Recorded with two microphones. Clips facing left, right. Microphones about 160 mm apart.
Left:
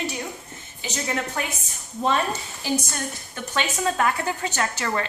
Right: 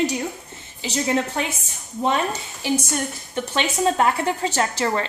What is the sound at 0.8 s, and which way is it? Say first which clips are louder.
Speech: right 6 dB; 25° right (ahead or behind).